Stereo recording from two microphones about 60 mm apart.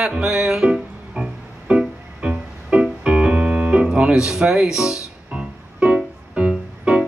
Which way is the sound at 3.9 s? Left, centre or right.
Centre.